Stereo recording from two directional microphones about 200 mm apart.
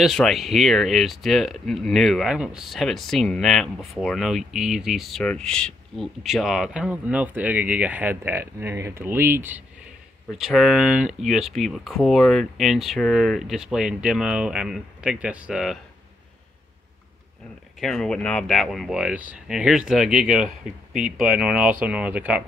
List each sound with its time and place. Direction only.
0.0 s speech: centre (ahead or behind)
17.7 s speech: centre (ahead or behind)